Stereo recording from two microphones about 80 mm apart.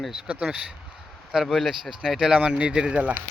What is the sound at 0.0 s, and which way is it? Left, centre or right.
Speech, centre.